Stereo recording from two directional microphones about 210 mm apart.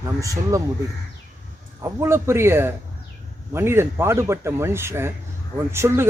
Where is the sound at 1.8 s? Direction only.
10° right (ahead or behind).